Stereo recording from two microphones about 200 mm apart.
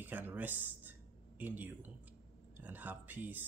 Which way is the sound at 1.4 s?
10° right (ahead or behind).